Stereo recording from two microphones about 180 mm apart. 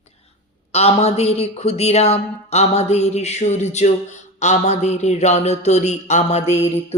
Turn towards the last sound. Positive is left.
turn(degrees=35)  # may be behind; listen again after turning